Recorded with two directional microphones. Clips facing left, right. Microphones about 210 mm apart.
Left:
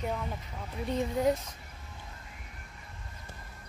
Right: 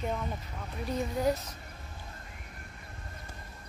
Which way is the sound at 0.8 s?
25° left (ahead or behind).